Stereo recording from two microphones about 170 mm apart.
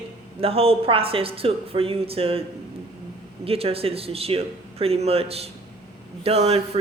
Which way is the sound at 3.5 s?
35° right (ahead or behind).